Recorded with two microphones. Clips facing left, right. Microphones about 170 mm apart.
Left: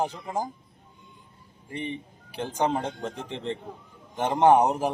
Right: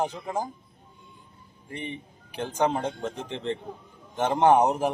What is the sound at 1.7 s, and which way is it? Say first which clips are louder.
Speech: left 3 dB; 35° left (ahead or behind).